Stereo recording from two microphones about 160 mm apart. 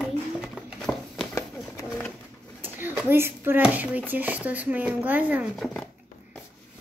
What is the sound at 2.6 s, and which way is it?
Speech, 10° right (ahead or behind).